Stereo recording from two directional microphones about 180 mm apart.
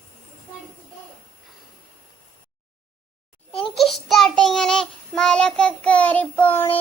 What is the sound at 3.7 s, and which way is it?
Child singing, centre (ahead or behind).